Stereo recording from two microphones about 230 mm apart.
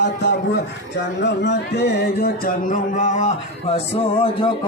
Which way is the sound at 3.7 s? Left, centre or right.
Left.